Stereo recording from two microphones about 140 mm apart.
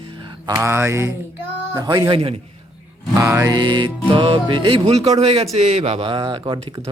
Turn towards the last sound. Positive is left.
turn(degrees=-35)  # may be behind; listen again after turning